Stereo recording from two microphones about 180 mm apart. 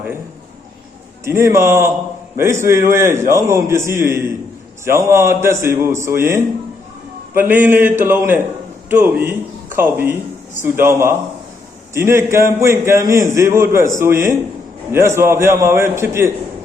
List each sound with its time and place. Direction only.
1.2 s a man's voice: 15° right (ahead or behind)